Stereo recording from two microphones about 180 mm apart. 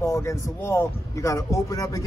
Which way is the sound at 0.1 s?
15° left (ahead or behind).